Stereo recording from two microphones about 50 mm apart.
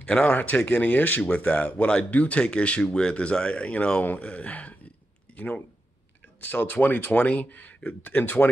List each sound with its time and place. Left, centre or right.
0.0 s speech: left
6.4 s speech: left